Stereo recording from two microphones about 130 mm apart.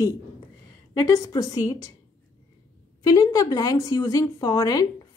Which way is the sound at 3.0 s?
30° left (ahead or behind).